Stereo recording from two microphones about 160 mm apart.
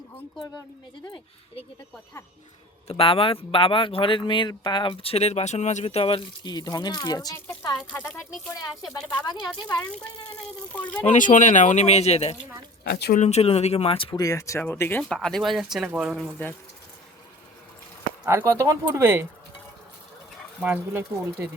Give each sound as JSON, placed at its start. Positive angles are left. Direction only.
{"t": 1.0, "sound": "speech", "side_deg": 30}
{"t": 2.8, "sound": "speech", "side_deg": 35}
{"t": 10.7, "sound": "speech", "side_deg": 10}
{"t": 11.0, "sound": "speech", "side_deg": 50}
{"t": 12.8, "sound": "speech", "side_deg": 75}
{"t": 13.1, "sound": "speech", "side_deg": 45}
{"t": 14.2, "sound": "speech", "side_deg": 20}
{"t": 18.3, "sound": "speech", "side_deg": -15}
{"t": 20.6, "sound": "speech", "side_deg": -5}